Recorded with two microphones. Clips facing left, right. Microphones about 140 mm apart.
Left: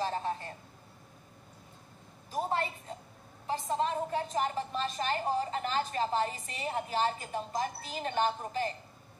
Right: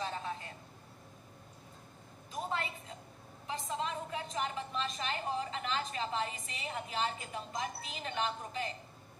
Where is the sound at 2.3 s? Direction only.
35° left (ahead or behind).